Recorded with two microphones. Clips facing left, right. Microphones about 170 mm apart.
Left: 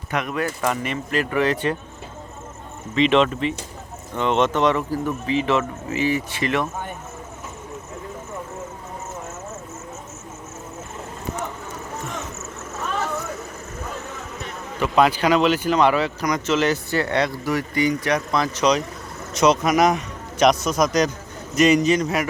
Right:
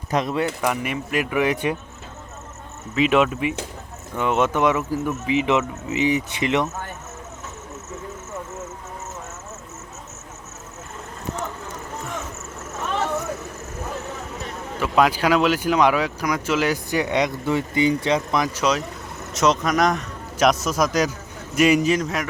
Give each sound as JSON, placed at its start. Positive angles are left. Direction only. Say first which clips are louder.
{"t": 0.1, "sound": "speech", "louder": "right 2 dB", "side_deg": -35}
{"t": 0.6, "sound": "speech", "louder": "even", "side_deg": -10}
{"t": 2.9, "sound": "speech", "louder": "left 1 dB", "side_deg": -5}
{"t": 14.8, "sound": "speech", "louder": "left 1 dB", "side_deg": -5}